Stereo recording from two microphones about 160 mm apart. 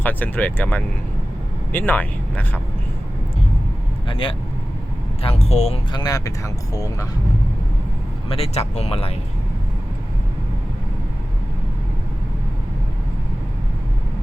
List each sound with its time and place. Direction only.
0.0 s speech: 10° left (ahead or behind)
4.1 s speech: 30° left (ahead or behind)
6.0 s speech: 20° left (ahead or behind)
8.3 s speech: 40° left (ahead or behind)